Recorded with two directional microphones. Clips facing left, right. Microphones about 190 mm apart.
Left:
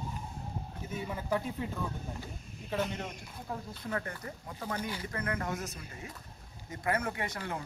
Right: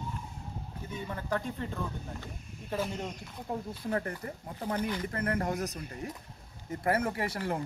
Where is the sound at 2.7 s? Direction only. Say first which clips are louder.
Even; 5° right (ahead or behind).